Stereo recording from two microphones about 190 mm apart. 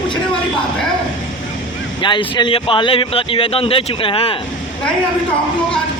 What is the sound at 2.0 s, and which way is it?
A man's voice, 25° left (ahead or behind).